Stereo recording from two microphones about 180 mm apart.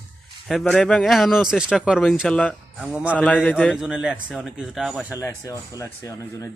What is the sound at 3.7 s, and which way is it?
Speech, 5° right (ahead or behind).